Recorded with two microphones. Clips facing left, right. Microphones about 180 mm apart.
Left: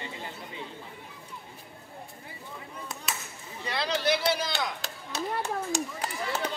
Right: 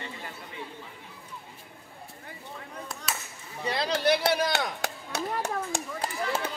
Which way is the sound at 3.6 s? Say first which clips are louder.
Right 2 dB; 40° right (ahead or behind).